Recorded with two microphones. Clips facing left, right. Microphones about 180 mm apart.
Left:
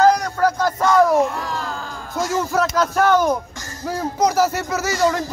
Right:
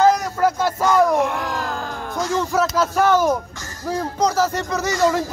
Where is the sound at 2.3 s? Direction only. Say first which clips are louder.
Even; centre (ahead or behind).